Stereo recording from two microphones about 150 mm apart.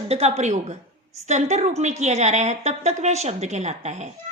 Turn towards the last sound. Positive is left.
turn(degrees=-50)  # may be behind; listen again after turning